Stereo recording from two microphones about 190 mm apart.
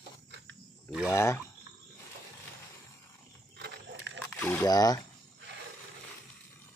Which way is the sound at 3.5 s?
60° right (ahead or behind).